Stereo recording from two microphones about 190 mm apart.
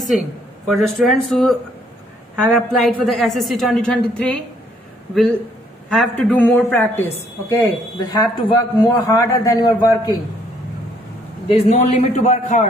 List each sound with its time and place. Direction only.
0.7 s a woman's voice: centre (ahead or behind)
2.5 s a woman's voice: 5° left (ahead or behind); by 10.1 s 20° left (ahead or behind)
11.4 s a man's voice: 40° left (ahead or behind)